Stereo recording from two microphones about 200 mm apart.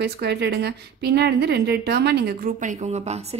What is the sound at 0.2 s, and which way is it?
A woman's voice, 55° right (ahead or behind).